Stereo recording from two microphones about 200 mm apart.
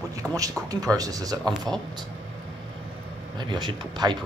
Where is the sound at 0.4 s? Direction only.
20° right (ahead or behind).